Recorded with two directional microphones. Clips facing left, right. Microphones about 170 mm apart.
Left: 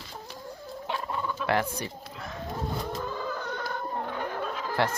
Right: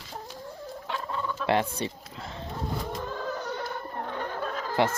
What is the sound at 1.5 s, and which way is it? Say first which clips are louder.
Speech: right 2 dB; 25° right (ahead or behind).